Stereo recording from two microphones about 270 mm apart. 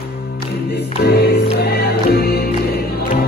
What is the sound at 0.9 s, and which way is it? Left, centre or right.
Music, left.